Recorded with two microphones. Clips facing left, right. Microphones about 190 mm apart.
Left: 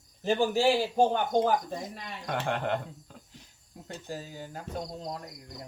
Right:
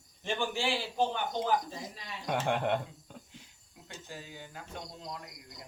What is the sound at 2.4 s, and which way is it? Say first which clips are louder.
Speech: even; centre (ahead or behind).